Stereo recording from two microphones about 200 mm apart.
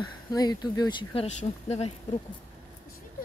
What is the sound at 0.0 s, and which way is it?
Speech, 20° left (ahead or behind).